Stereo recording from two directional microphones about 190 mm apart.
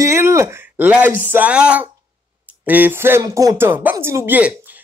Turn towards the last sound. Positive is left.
turn(degrees=-10)  # may be behind; listen again after turning